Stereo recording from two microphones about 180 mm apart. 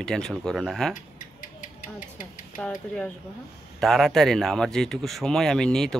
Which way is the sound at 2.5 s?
5° left (ahead or behind).